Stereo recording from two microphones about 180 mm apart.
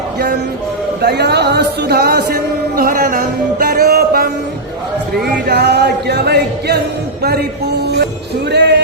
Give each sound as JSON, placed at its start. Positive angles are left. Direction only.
{"t": 1.0, "sound": "speech", "side_deg": -65}